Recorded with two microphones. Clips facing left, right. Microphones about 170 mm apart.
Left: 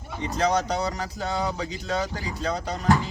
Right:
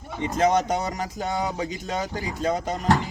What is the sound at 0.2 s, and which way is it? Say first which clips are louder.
Speech: right 3 dB; 20° right (ahead or behind).